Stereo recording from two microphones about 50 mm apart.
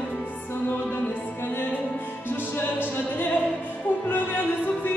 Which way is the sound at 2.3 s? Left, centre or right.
Left.